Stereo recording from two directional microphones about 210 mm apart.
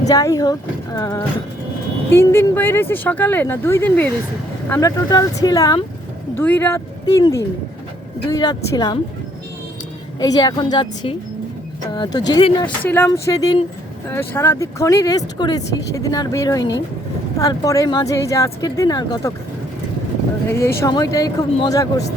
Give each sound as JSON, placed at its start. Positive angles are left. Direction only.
{"t": 0.0, "sound": "a woman's voice", "side_deg": 15}
{"t": 10.2, "sound": "a woman's voice", "side_deg": 20}
{"t": 12.3, "sound": "a woman's voice", "side_deg": 25}
{"t": 12.8, "sound": "speech", "side_deg": 10}
{"t": 20.5, "sound": "speech", "side_deg": 10}